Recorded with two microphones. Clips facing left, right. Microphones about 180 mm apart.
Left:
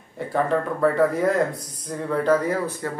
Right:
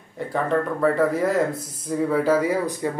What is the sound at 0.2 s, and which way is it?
A man's voice, centre (ahead or behind).